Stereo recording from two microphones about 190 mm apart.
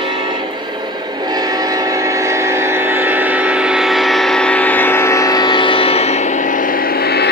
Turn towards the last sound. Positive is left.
turn(degrees=55)  # may be behind; listen again after turning